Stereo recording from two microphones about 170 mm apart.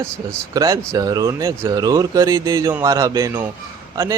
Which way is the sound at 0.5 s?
20° right (ahead or behind).